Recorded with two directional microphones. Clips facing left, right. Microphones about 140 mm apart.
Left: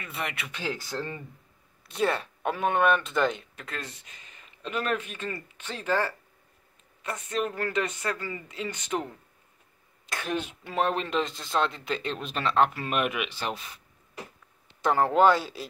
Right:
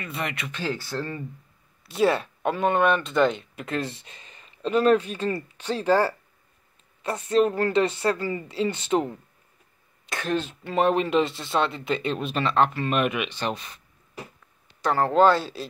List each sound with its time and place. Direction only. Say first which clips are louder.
0.0 s speech: right 4 dB; centre (ahead or behind); by 1.2 s 15° left (ahead or behind)
1.9 s speech: right 5 dB; 5° right (ahead or behind)
3.6 s speech: right 10 dB; 30° right (ahead or behind)
10.0 s speech: right 4 dB; centre (ahead or behind)
10.3 s speech: right 5 dB; 10° left (ahead or behind)
10.8 s speech: right 6 dB; 5° right (ahead or behind)
14.8 s speech: right 2 dB; 15° left (ahead or behind)